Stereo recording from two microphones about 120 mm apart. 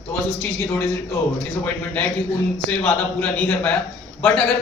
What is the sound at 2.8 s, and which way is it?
Speech, 10° left (ahead or behind).